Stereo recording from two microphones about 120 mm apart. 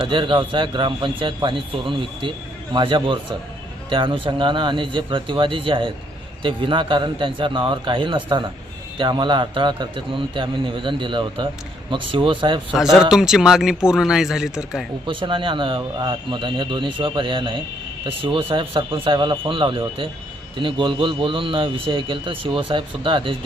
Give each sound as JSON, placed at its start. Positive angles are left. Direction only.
{"t": 0.0, "sound": "speech", "side_deg": -45}
{"t": 12.7, "sound": "speech", "side_deg": -5}
{"t": 15.0, "sound": "speech", "side_deg": -45}